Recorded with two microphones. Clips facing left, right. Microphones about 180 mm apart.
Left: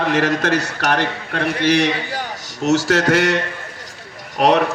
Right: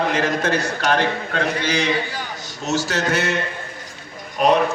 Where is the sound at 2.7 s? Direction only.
90° left.